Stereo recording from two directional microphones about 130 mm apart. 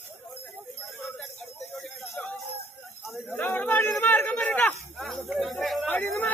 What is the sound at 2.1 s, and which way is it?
Music, 15° left (ahead or behind).